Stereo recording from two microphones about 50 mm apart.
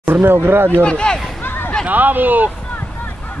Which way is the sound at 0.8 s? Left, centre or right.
Centre.